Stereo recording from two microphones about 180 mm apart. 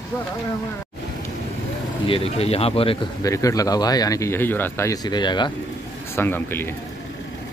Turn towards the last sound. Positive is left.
turn(degrees=10)  # may be behind; listen again after turning